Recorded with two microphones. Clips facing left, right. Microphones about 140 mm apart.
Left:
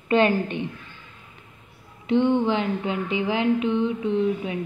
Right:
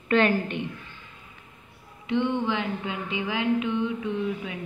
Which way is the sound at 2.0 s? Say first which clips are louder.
Left 5 dB; 35° left (ahead or behind).